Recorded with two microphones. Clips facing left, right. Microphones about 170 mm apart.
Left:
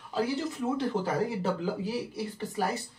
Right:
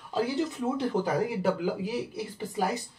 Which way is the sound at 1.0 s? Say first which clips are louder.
Right 2 dB; 15° right (ahead or behind).